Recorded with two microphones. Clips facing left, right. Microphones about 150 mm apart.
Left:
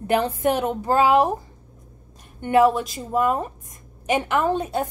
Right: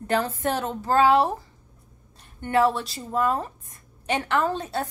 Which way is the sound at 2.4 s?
15° left (ahead or behind).